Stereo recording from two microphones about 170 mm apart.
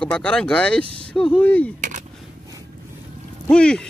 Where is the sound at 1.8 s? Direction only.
45° right (ahead or behind).